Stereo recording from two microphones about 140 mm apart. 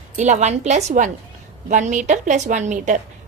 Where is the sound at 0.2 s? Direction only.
55° right (ahead or behind).